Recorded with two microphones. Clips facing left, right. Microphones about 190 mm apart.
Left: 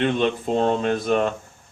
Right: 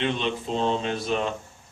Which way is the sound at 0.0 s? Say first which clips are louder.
Left 6 dB; 50° left (ahead or behind).